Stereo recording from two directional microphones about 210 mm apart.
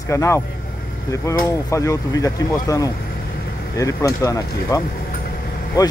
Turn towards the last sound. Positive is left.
turn(degrees=20)  # may be behind; listen again after turning